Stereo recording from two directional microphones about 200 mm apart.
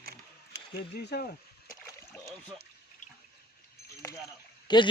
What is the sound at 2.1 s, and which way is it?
Speech, 5° left (ahead or behind).